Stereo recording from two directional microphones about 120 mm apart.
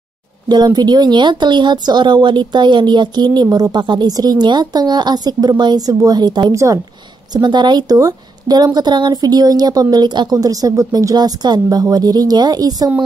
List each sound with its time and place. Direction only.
0.5 s speech: 35° right (ahead or behind)
7.3 s speech: 40° right (ahead or behind)